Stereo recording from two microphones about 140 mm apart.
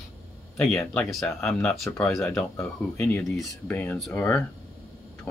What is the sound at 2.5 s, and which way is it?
Speech, 15° left (ahead or behind).